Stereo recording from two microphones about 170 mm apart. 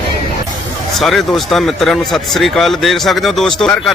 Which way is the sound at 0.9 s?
Centre (ahead or behind).